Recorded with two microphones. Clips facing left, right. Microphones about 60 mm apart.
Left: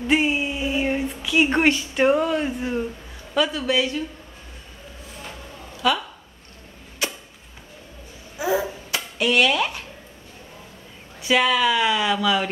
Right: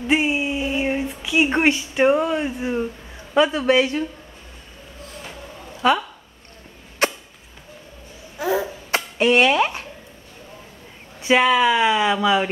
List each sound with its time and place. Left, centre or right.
0.0 s a sound: centre
3.3 s speech: right
5.8 s a woman's voice: right
7.0 s a sound: right
8.4 s cough: centre
8.9 s speech: right
11.1 s speech: right